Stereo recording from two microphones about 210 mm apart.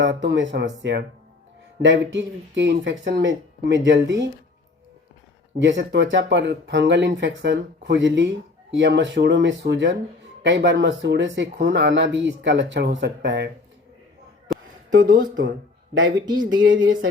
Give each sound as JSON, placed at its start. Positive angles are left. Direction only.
{"t": 0.0, "sound": "speech", "side_deg": -60}
{"t": 5.5, "sound": "speech", "side_deg": -55}
{"t": 14.5, "sound": "a sound", "side_deg": 0}
{"t": 15.0, "sound": "speech", "side_deg": -40}
{"t": 16.6, "sound": "speech", "side_deg": -65}